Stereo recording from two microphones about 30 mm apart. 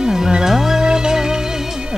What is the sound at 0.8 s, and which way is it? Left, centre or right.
Music, right.